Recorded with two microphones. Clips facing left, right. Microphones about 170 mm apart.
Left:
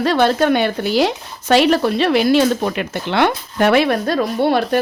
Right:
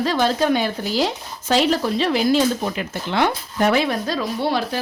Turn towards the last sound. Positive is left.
turn(degrees=55)  # may be behind; listen again after turning